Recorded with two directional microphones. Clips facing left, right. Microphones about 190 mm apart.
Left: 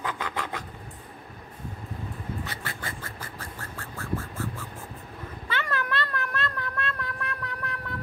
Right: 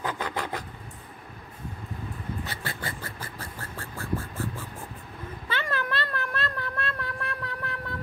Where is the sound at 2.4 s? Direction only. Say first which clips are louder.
Right 1 dB; 30° right (ahead or behind).